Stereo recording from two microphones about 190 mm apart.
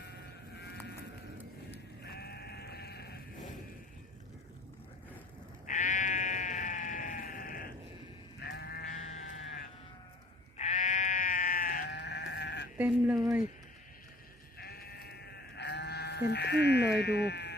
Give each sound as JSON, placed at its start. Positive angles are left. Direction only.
{"t": 2.0, "sound": "sheep", "side_deg": 55}
{"t": 5.6, "sound": "sheep", "side_deg": 45}
{"t": 8.4, "sound": "sheep", "side_deg": 60}
{"t": 10.6, "sound": "sheep", "side_deg": 40}
{"t": 12.7, "sound": "speech", "side_deg": -10}
{"t": 14.6, "sound": "sheep", "side_deg": 55}